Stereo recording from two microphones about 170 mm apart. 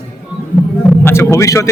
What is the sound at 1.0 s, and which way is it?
Speech, 15° left (ahead or behind).